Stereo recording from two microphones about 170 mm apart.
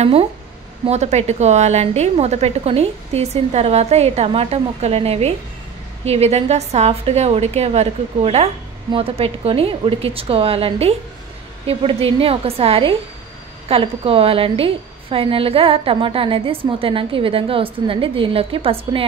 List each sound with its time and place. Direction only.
0.0 s a woman's voice: 35° right (ahead or behind)